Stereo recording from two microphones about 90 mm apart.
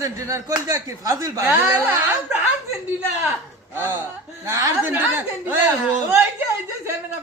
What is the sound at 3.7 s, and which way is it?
Speech, 25° right (ahead or behind).